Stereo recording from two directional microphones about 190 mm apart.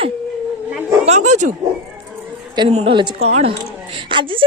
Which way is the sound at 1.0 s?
35° right (ahead or behind).